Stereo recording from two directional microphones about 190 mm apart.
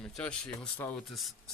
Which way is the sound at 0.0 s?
5° left (ahead or behind).